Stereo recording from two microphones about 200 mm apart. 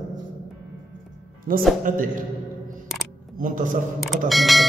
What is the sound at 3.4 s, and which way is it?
Speech, 40° right (ahead or behind).